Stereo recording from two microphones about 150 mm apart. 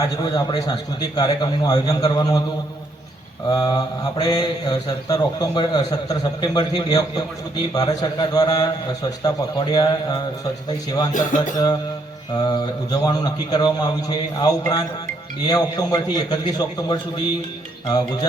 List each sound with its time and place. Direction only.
0.0 s speech: 25° left (ahead or behind)
3.5 s speech: 25° left (ahead or behind)
11.3 s speech: 25° left (ahead or behind)
12.9 s speech: 25° left (ahead or behind)